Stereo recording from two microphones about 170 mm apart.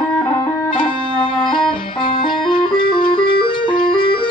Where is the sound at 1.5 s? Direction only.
30° left (ahead or behind).